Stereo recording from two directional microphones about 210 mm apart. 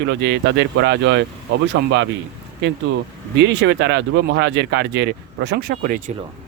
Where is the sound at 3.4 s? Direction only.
55° right (ahead or behind).